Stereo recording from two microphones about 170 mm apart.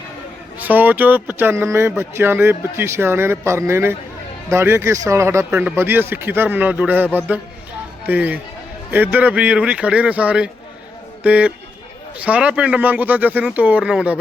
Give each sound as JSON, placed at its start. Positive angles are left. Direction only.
{"t": 0.6, "sound": "speech", "side_deg": -10}